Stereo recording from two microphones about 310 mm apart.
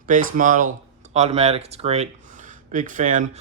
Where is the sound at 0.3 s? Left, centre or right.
Right.